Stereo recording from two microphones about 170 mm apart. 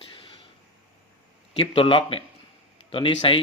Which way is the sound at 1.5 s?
35° left (ahead or behind).